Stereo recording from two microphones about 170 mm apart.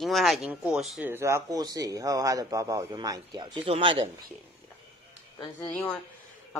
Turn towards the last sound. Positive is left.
turn(degrees=5)  # may be behind; listen again after turning